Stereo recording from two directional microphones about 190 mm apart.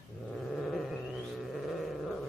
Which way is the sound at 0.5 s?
Centre (ahead or behind).